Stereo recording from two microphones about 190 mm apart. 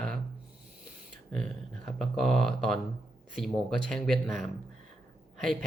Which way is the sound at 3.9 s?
Centre (ahead or behind).